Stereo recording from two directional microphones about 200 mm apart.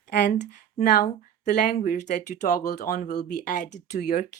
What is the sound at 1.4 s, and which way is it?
Speech, 40° left (ahead or behind).